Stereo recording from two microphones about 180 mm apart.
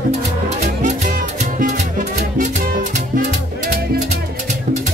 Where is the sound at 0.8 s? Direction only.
45° right (ahead or behind).